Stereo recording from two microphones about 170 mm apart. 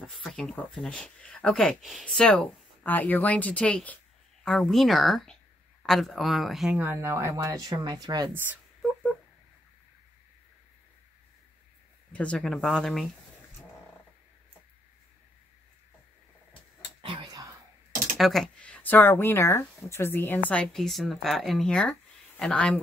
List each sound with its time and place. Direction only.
0.0 s a woman's voice: 5° left (ahead or behind)
6.8 s speech: 15° right (ahead or behind)
12.1 s speech: 5° left (ahead or behind)
17.0 s whispering: 30° right (ahead or behind)
18.1 s speech: centre (ahead or behind)